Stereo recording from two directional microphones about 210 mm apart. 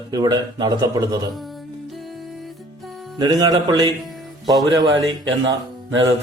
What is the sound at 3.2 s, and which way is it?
A man's voice, 20° right (ahead or behind).